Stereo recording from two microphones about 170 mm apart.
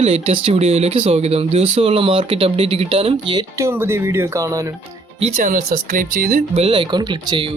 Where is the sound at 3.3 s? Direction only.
20° right (ahead or behind).